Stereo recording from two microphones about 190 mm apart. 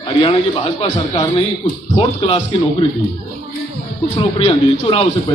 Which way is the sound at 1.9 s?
30° left (ahead or behind).